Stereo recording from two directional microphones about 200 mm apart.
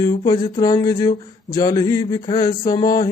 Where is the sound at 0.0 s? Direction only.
15° left (ahead or behind).